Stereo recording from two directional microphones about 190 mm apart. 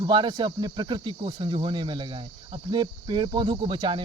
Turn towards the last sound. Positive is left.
turn(degrees=-25)  # may be behind; listen again after turning